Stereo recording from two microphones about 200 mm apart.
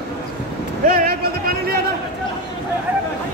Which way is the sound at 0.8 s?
45° right (ahead or behind).